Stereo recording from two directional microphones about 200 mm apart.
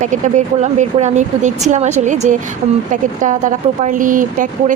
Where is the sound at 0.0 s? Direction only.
35° right (ahead or behind).